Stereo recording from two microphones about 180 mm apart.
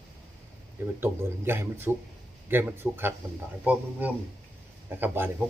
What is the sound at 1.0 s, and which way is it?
Speech, 10° right (ahead or behind).